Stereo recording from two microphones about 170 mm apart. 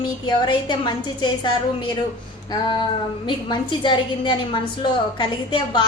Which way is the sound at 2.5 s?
25° left (ahead or behind).